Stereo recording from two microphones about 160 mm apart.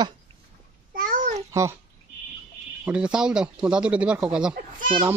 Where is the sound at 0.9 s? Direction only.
55° right (ahead or behind).